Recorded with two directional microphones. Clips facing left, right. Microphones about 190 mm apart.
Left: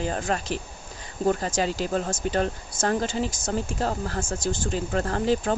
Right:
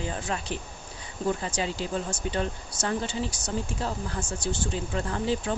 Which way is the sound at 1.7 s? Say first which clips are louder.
Left 4 dB; 75° left (ahead or behind).